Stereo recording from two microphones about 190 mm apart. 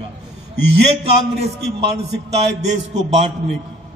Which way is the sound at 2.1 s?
65° right (ahead or behind).